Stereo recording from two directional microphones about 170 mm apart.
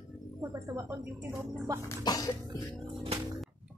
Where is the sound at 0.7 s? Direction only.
15° right (ahead or behind).